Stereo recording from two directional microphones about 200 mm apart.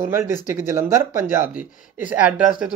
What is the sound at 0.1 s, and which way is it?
Speech, 10° right (ahead or behind).